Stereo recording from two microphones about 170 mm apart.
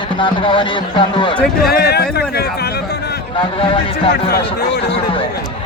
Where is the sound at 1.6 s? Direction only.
65° left (ahead or behind).